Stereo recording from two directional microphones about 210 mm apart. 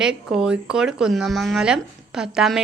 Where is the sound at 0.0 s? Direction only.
5° right (ahead or behind).